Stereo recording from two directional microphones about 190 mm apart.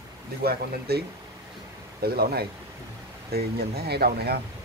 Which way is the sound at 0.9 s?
55° right (ahead or behind).